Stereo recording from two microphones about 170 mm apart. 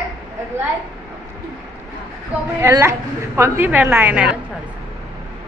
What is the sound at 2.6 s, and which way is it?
A woman's voice, 15° right (ahead or behind).